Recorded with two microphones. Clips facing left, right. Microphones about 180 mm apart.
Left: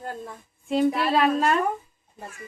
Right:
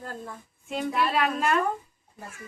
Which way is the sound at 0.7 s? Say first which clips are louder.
Left 5 dB; 35° left (ahead or behind).